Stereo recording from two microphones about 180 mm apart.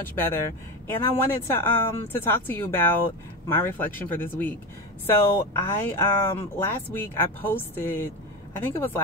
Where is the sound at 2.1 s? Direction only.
10° left (ahead or behind).